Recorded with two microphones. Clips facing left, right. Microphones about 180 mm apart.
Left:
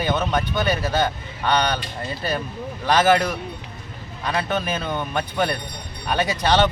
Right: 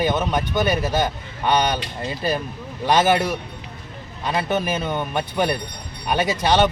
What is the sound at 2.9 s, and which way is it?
Speech, 15° right (ahead or behind).